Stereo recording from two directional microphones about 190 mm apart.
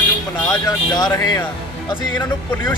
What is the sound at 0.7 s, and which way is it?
Speech, 20° left (ahead or behind).